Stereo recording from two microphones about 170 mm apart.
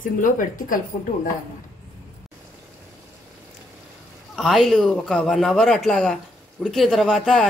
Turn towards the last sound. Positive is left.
turn(degrees=0)  # may be behind; listen again after turning